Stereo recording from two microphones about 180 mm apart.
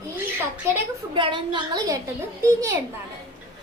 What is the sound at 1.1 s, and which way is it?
Speech, 25° right (ahead or behind).